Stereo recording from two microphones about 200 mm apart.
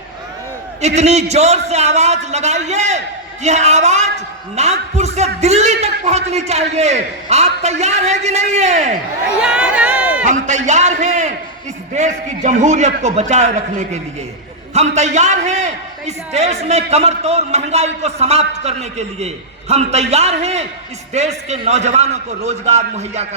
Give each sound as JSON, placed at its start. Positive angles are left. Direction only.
{"t": 0.8, "sound": "a man's voice", "side_deg": -35}
{"t": 9.4, "sound": "a sound", "side_deg": -5}
{"t": 10.2, "sound": "a man's voice", "side_deg": -35}